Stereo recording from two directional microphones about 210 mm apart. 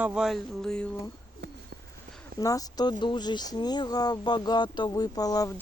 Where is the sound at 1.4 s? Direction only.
55° right (ahead or behind).